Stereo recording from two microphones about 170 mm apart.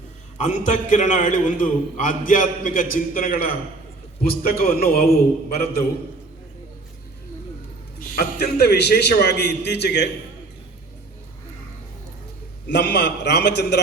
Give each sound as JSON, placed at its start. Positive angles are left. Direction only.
{"t": 0.3, "sound": "a man's voice", "side_deg": 45}
{"t": 8.4, "sound": "a man's voice", "side_deg": 75}
{"t": 12.6, "sound": "a man's voice", "side_deg": 80}